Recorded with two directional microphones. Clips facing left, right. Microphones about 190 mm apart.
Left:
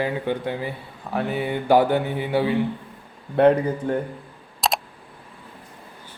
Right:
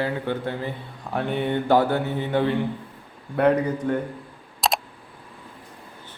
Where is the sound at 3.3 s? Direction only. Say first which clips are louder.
Left 3 dB; 25° left (ahead or behind).